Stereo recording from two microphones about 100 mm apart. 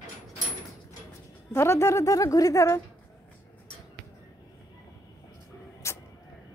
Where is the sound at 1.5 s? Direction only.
25° left (ahead or behind).